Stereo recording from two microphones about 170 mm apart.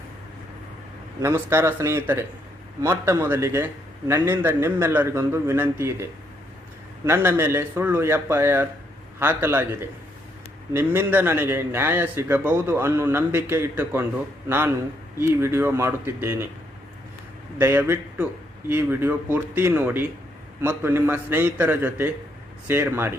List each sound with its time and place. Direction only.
1.2 s a man's voice: 15° right (ahead or behind)
7.0 s a man's voice: 15° right (ahead or behind)
10.7 s a man's voice: 15° right (ahead or behind)
17.6 s a man's voice: 15° right (ahead or behind)